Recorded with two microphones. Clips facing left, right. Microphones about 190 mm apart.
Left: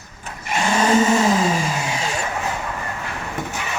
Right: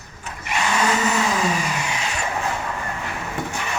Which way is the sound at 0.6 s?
30° left (ahead or behind).